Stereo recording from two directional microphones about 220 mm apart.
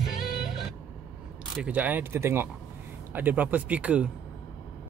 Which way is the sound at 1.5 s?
5° right (ahead or behind).